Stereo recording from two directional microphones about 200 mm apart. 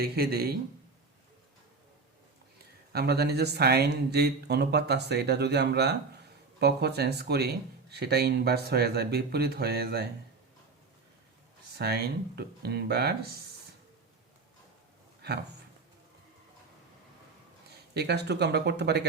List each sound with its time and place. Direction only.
0.0 s speech: 50° right (ahead or behind)
2.9 s speech: 55° right (ahead or behind)
11.8 s speech: 50° right (ahead or behind)
17.9 s speech: 55° right (ahead or behind)